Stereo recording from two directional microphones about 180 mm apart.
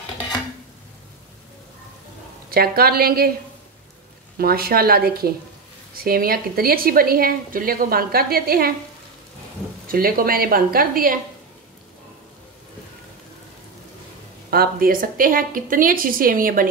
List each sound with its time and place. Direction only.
2.5 s a woman's voice: 55° right (ahead or behind)
4.4 s a woman's voice: 55° right (ahead or behind)
9.8 s a woman's voice: 55° right (ahead or behind)
14.5 s a woman's voice: 55° right (ahead or behind)